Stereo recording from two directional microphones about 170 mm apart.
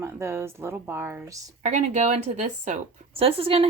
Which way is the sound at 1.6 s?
45° right (ahead or behind).